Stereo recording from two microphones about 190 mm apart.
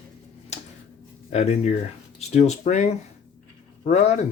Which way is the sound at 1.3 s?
35° left (ahead or behind).